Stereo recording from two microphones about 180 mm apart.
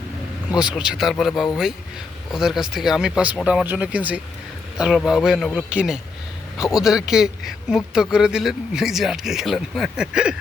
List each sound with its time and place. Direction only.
0.5 s speech: 5° right (ahead or behind)
2.3 s speech: centre (ahead or behind)